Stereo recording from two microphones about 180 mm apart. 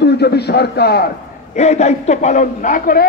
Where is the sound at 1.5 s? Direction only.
40° left (ahead or behind).